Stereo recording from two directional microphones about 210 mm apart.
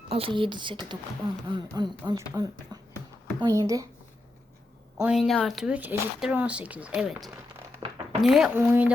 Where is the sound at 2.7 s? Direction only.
20° right (ahead or behind).